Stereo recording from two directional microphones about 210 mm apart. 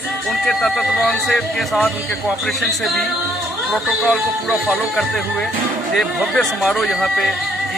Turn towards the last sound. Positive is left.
turn(degrees=0)  # may be behind; listen again after turning